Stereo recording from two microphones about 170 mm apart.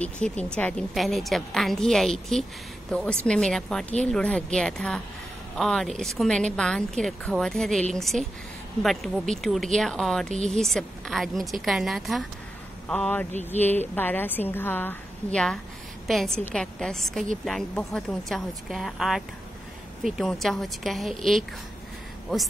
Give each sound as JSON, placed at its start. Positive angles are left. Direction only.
{"t": 0.0, "sound": "a woman's voice", "side_deg": 5}
{"t": 10.3, "sound": "a woman's voice", "side_deg": -45}
{"t": 10.6, "sound": "a woman's voice", "side_deg": 0}